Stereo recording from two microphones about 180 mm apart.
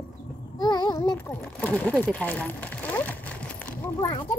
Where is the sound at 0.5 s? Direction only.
25° left (ahead or behind).